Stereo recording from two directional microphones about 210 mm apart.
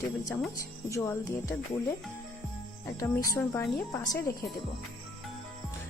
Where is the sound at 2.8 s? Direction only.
10° left (ahead or behind).